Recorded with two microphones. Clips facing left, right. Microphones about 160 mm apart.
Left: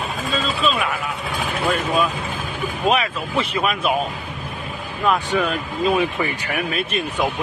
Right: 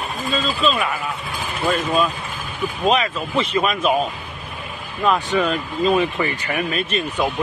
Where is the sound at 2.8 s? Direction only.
5° left (ahead or behind).